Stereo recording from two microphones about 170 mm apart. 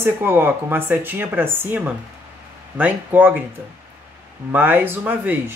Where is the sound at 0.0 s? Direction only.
15° right (ahead or behind).